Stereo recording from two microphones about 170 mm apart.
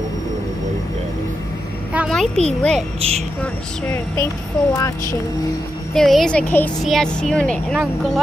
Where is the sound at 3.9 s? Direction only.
15° left (ahead or behind).